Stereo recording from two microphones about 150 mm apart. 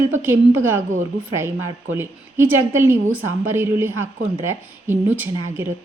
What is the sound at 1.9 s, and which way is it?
A woman's voice, 15° right (ahead or behind).